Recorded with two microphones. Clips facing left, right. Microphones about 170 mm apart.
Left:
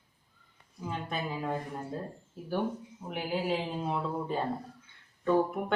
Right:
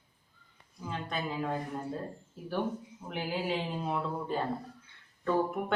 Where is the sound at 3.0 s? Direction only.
5° left (ahead or behind).